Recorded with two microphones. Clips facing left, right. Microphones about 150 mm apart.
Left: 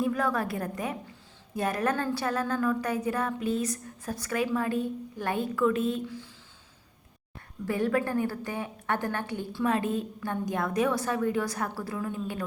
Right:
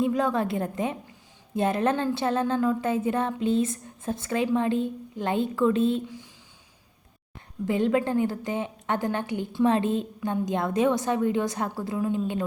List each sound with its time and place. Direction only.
0.0 s a woman's voice: 20° right (ahead or behind)
7.6 s a woman's voice: 20° right (ahead or behind)